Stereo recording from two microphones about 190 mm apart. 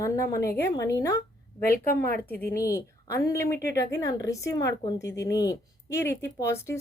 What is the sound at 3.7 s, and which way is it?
Speech, 65° left (ahead or behind).